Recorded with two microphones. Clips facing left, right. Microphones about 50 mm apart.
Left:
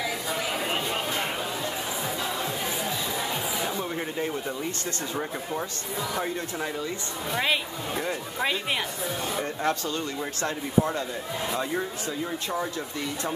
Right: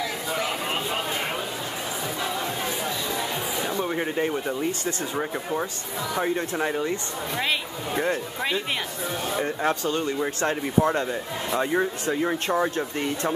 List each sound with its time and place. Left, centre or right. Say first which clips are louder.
3.8 s speech: right 4 dB; right
6.3 s speech: right 5 dB; right
8.1 s speech: right 2 dB; centre
9.4 s speech: right 3 dB; centre; by 13.3 s right